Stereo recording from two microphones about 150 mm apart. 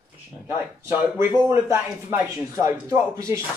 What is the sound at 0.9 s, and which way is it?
Speech, 15° right (ahead or behind).